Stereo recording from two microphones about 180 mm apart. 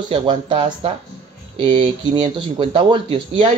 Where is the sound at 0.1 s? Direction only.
30° right (ahead or behind).